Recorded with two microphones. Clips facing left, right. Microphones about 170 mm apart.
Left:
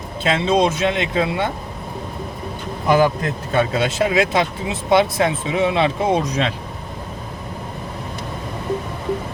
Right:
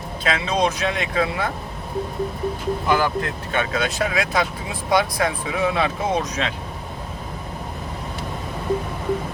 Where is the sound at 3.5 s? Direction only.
30° left (ahead or behind).